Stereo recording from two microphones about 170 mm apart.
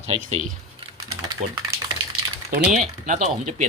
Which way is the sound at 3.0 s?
45° right (ahead or behind).